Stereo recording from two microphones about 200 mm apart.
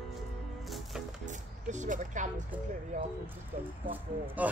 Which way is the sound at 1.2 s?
35° right (ahead or behind).